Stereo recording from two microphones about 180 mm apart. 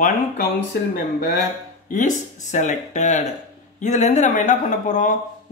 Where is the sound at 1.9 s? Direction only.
45° left (ahead or behind).